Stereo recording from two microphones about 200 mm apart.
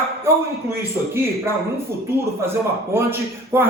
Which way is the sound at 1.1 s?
10° right (ahead or behind).